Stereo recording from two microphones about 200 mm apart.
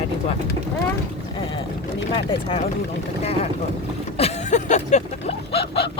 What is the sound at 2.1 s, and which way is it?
Speech, 30° left (ahead or behind).